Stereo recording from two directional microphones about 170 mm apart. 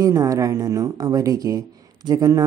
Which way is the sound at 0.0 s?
20° right (ahead or behind).